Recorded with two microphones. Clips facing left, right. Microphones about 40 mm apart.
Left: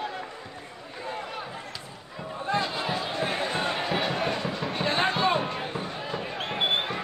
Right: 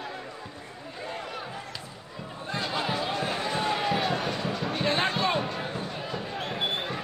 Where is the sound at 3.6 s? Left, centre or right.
Centre.